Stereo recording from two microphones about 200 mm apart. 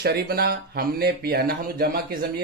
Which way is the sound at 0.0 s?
50° right (ahead or behind).